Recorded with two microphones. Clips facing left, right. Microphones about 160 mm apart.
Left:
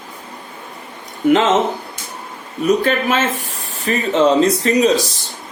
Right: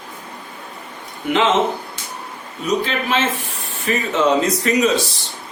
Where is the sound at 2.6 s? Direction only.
50° left (ahead or behind).